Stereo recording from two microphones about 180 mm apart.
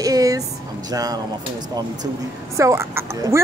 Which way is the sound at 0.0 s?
20° right (ahead or behind).